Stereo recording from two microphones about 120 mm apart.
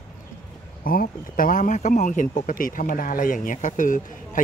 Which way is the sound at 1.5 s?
90° left.